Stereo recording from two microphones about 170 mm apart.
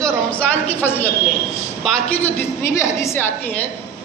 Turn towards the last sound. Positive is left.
turn(degrees=15)  # may be behind; listen again after turning